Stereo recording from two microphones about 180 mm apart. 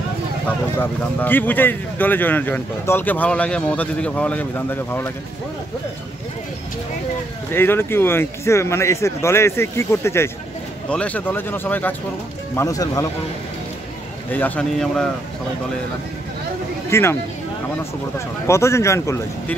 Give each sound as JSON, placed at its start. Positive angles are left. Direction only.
{"t": 0.7, "sound": "speech", "side_deg": 10}
{"t": 7.5, "sound": "speech", "side_deg": 10}
{"t": 14.3, "sound": "speech", "side_deg": 10}
{"t": 16.9, "sound": "speech", "side_deg": 15}
{"t": 18.5, "sound": "speech", "side_deg": 15}